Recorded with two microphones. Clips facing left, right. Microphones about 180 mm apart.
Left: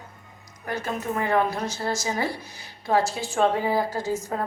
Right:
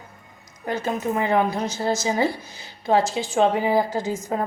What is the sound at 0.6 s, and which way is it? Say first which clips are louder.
A woman's voice: right 4 dB; 20° right (ahead or behind).